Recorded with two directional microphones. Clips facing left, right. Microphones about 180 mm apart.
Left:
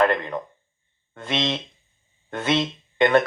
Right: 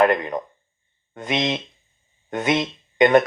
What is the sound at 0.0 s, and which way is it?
Speech, 15° right (ahead or behind).